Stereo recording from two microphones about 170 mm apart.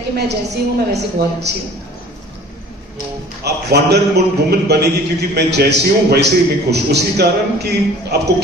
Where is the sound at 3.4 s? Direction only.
75° right (ahead or behind).